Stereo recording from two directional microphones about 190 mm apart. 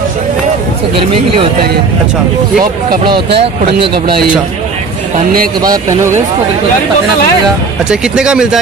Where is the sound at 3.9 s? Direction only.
55° right (ahead or behind).